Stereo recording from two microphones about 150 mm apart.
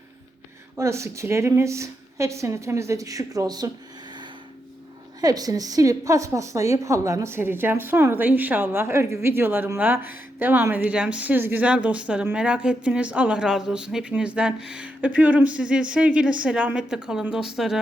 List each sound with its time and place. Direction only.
0.8 s a woman's voice: 20° right (ahead or behind)
5.2 s a woman's voice: 25° right (ahead or behind); by 17.7 s 5° right (ahead or behind)